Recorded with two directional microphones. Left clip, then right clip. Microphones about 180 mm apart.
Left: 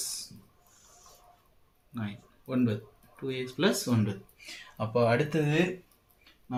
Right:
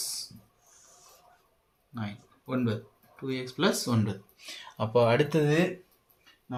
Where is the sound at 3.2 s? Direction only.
30° right (ahead or behind).